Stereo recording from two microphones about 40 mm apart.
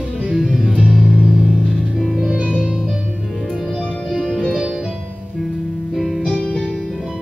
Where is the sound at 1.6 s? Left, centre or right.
Centre.